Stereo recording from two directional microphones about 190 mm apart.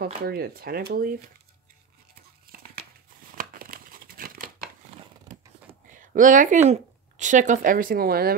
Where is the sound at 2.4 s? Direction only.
50° right (ahead or behind).